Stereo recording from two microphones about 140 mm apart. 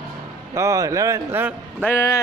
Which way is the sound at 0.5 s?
20° right (ahead or behind).